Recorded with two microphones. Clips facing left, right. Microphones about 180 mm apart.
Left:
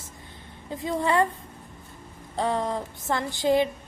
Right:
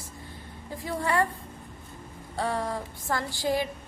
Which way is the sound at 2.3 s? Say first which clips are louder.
Left 3 dB; 20° left (ahead or behind).